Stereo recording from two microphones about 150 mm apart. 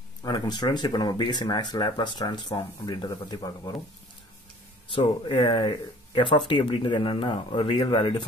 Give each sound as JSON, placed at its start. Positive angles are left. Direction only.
{"t": 0.2, "sound": "speech", "side_deg": 30}
{"t": 4.9, "sound": "speech", "side_deg": 35}